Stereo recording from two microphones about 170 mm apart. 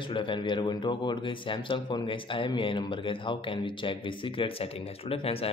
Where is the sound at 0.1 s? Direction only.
30° left (ahead or behind).